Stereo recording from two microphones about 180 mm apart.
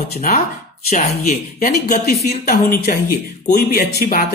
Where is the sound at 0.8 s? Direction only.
45° left (ahead or behind).